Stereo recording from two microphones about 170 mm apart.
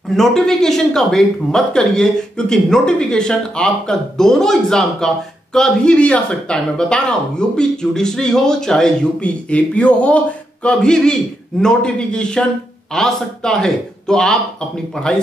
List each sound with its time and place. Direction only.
0.1 s speech: centre (ahead or behind)